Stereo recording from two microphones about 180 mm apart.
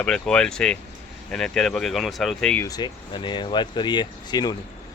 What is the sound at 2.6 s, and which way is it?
Speech, 20° left (ahead or behind).